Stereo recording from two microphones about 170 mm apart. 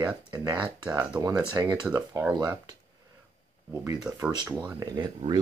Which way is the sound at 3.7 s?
20° right (ahead or behind).